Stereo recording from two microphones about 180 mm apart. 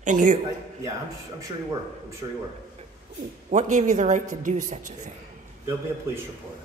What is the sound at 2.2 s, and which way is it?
Speech, 25° right (ahead or behind).